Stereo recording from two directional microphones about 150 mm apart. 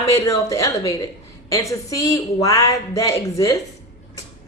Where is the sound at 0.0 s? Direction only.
20° left (ahead or behind).